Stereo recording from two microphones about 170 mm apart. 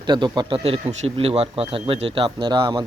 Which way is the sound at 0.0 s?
25° right (ahead or behind).